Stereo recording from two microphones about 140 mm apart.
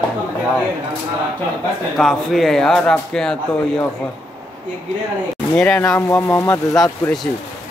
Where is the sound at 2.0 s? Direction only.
Centre (ahead or behind).